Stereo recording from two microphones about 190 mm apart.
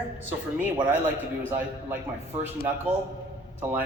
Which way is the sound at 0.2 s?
10° right (ahead or behind).